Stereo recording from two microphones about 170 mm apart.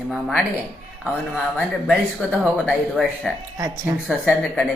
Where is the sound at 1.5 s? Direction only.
5° right (ahead or behind).